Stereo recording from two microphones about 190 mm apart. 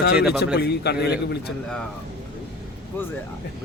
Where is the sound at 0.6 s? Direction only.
60° left (ahead or behind).